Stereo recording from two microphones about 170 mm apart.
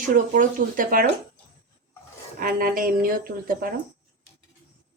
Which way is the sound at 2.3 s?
55° right (ahead or behind).